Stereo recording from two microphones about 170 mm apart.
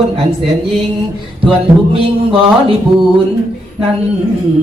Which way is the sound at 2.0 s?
30° right (ahead or behind).